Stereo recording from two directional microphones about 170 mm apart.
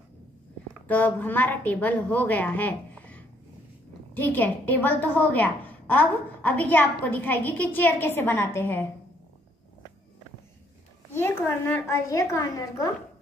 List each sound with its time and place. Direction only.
0.8 s a woman's voice: 10° left (ahead or behind)
11.1 s a woman's voice: 15° left (ahead or behind)